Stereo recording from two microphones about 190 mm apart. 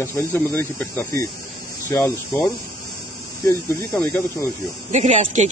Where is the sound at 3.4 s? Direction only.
15° left (ahead or behind).